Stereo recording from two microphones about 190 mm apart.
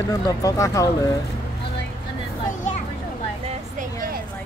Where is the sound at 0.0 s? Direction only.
20° left (ahead or behind).